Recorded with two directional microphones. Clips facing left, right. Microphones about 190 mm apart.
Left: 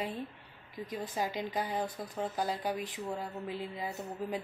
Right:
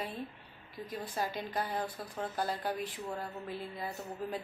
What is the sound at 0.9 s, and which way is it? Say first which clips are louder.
Speech: left 1 dB; 15° left (ahead or behind).